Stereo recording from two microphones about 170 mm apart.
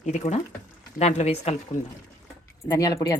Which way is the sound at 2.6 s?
20° left (ahead or behind).